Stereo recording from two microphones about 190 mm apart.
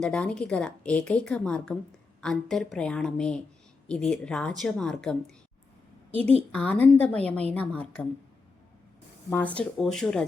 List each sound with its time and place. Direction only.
0.0 s a woman's voice: 5° left (ahead or behind)
6.5 s a woman's voice: 5° left (ahead or behind)
9.3 s a woman's voice: 10° left (ahead or behind)